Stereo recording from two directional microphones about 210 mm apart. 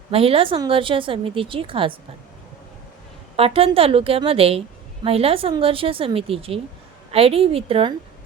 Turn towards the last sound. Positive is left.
turn(degrees=-25)  # may be behind; listen again after turning